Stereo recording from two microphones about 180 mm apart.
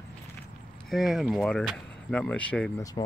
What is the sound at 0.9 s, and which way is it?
Speech, centre (ahead or behind).